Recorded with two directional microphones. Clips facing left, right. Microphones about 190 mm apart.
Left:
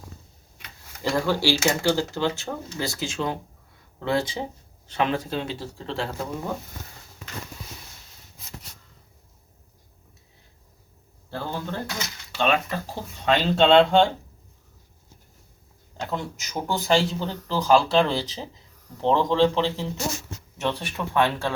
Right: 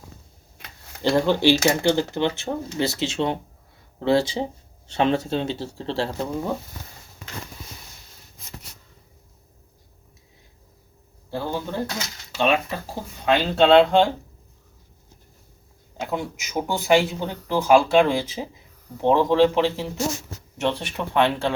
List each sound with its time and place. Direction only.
1.0 s speech: 25° right (ahead or behind)
11.3 s speech: 15° right (ahead or behind)
16.0 s speech: 10° right (ahead or behind)